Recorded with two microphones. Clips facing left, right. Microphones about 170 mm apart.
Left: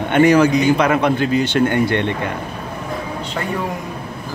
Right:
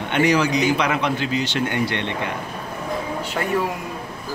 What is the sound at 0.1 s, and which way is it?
A man's voice, 50° left (ahead or behind).